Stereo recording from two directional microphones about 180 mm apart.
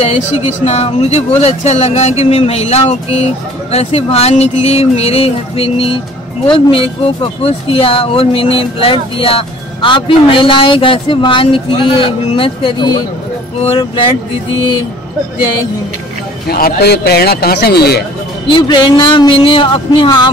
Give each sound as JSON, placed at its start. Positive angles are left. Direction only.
{"t": 0.5, "sound": "speech", "side_deg": 35}
{"t": 16.4, "sound": "a man's voice", "side_deg": 60}
{"t": 18.5, "sound": "speech", "side_deg": 25}